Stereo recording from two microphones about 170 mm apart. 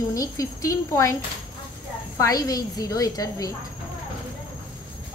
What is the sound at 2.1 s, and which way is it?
A woman's voice, 20° left (ahead or behind).